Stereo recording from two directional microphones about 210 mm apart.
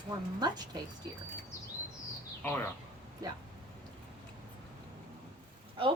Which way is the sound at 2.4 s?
10° left (ahead or behind).